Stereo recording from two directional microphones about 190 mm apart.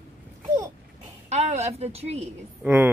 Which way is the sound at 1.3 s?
35° right (ahead or behind).